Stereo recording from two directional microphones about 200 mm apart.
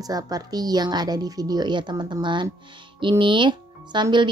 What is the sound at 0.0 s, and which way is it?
Speech, 20° right (ahead or behind).